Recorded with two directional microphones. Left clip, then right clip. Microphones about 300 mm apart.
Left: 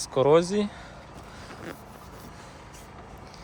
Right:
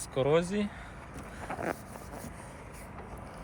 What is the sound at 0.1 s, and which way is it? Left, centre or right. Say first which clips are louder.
Speech: left 7 dB; centre.